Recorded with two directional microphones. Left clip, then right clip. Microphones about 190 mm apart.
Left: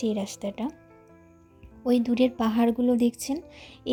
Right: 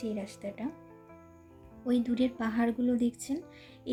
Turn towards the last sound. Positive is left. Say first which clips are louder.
# left 7 dB
turn(degrees=35)  # may be behind; listen again after turning